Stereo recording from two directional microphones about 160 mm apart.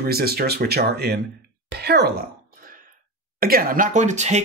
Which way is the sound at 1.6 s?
90° right.